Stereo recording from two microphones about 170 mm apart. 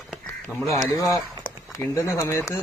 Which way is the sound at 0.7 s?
20° left (ahead or behind).